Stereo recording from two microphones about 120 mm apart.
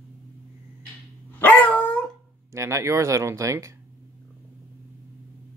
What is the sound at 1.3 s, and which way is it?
Dog, 15° left (ahead or behind).